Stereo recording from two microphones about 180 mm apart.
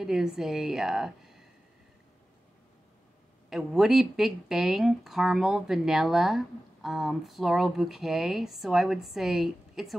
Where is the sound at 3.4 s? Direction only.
Centre (ahead or behind).